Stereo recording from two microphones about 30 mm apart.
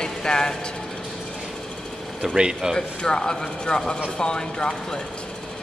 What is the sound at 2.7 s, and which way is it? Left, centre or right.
Speech, left.